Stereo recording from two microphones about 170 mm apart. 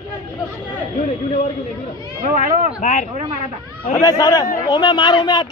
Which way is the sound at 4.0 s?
20° left (ahead or behind).